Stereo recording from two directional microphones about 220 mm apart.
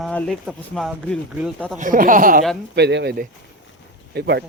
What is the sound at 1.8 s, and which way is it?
Speech, 40° right (ahead or behind).